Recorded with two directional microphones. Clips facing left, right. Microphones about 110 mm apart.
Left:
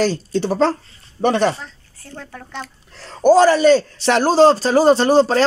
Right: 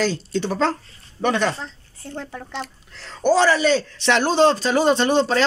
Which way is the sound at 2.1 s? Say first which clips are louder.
Right 1 dB; 20° right (ahead or behind).